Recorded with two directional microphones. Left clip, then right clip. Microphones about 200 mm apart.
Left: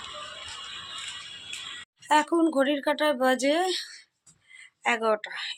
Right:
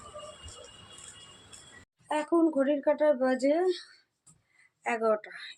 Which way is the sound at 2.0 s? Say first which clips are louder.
Left 5 dB; 15° left (ahead or behind).